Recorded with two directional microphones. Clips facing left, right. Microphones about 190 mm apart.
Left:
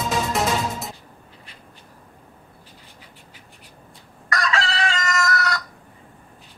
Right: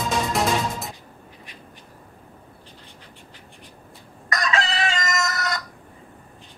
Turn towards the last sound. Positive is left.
turn(degrees=-20)  # may be behind; listen again after turning